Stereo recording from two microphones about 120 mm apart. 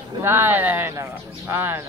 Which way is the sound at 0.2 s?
20° right (ahead or behind).